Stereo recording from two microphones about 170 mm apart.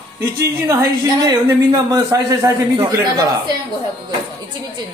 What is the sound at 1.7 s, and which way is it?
A man's voice, 20° right (ahead or behind).